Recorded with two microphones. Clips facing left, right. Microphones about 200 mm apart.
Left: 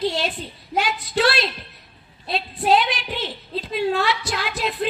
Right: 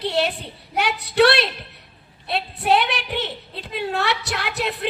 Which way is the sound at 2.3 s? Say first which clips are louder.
Left 1 dB; 65° right (ahead or behind).